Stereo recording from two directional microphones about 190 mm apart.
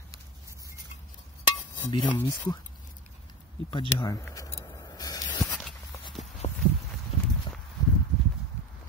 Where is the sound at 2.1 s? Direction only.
15° left (ahead or behind).